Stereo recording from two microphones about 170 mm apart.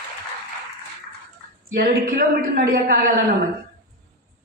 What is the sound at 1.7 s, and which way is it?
A woman's voice, 60° right (ahead or behind).